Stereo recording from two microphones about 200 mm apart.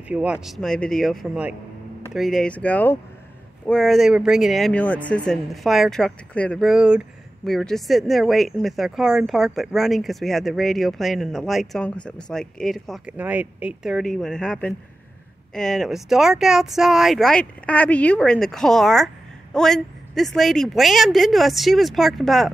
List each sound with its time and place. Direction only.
0.1 s speech: 5° right (ahead or behind)